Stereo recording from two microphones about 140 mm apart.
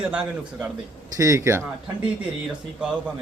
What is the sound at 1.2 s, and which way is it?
Speech, 20° right (ahead or behind).